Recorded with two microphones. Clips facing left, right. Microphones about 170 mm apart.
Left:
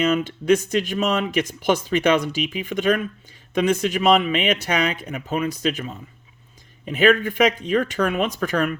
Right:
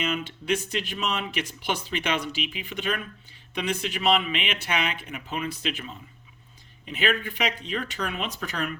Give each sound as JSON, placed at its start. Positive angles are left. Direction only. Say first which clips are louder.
{"t": 0.0, "sound": "speech", "louder": "left 9 dB", "side_deg": 45}